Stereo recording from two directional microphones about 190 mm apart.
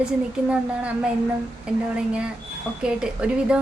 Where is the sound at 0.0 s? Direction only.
5° right (ahead or behind).